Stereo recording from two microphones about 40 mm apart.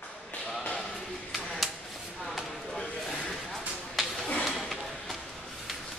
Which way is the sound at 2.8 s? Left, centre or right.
Centre.